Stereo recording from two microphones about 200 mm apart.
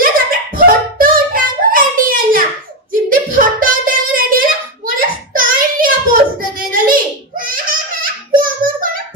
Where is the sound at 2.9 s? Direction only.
45° right (ahead or behind).